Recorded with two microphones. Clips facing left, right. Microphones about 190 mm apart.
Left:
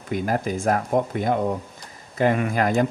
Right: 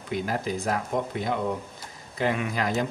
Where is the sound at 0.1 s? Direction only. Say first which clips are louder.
Left 4 dB; 50° left (ahead or behind).